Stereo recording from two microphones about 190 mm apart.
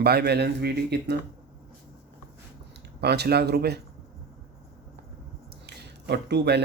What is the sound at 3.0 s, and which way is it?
Speech, 60° right (ahead or behind).